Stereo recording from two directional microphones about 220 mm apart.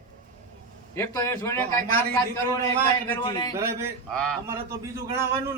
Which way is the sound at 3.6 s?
10° right (ahead or behind).